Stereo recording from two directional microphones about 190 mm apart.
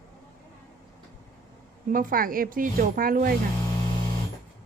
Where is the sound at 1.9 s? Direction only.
45° right (ahead or behind).